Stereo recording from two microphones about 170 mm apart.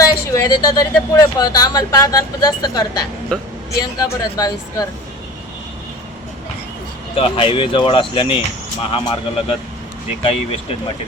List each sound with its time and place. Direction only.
0.0 s speech: 20° left (ahead or behind)
3.3 s speech: 5° left (ahead or behind)
3.8 s speech: 20° left (ahead or behind)
7.2 s speech: 30° left (ahead or behind)